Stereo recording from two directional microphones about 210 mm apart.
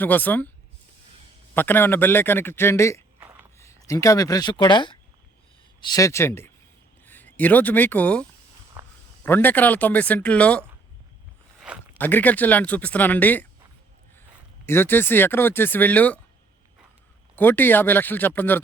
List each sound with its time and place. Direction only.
0.0 s speech: 10° left (ahead or behind)
1.5 s speech: 10° left (ahead or behind)
3.2 s a sound: 10° right (ahead or behind)
3.6 s speech: 15° left (ahead or behind)
11.9 s speech: 10° left (ahead or behind)
14.7 s speech: 10° left (ahead or behind)
17.3 s speech: 10° left (ahead or behind)